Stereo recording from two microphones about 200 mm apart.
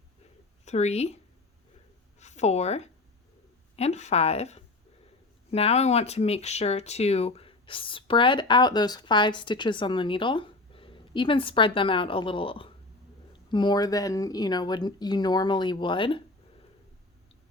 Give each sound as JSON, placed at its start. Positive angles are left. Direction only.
{"t": 0.6, "sound": "a woman's voice", "side_deg": 35}